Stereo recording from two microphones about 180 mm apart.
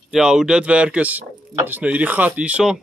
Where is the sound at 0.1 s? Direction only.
5° right (ahead or behind).